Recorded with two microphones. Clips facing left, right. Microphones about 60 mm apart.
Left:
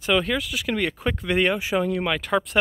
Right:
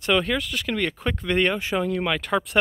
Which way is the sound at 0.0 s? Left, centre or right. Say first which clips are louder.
Even; centre.